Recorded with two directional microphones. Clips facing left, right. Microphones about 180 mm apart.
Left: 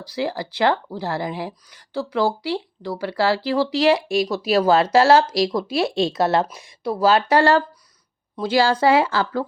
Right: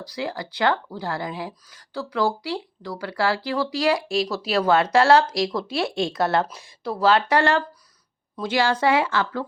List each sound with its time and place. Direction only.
0.0 s speech: 30° left (ahead or behind)